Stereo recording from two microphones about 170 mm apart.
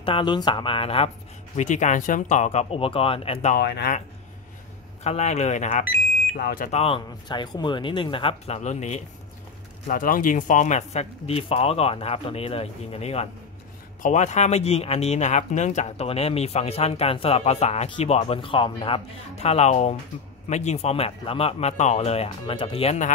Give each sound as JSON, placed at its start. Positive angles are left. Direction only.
{"t": 0.0, "sound": "speech", "side_deg": 30}
{"t": 1.6, "sound": "speech", "side_deg": 45}
{"t": 3.5, "sound": "speech", "side_deg": 65}
{"t": 5.0, "sound": "speech", "side_deg": 40}
{"t": 6.3, "sound": "speech", "side_deg": 55}
{"t": 6.7, "sound": "speech", "side_deg": 35}
{"t": 9.8, "sound": "speech", "side_deg": 55}